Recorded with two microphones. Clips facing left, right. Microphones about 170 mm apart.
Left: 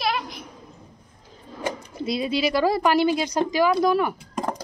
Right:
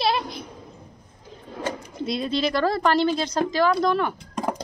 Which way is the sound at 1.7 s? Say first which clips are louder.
Left 1 dB; 5° left (ahead or behind).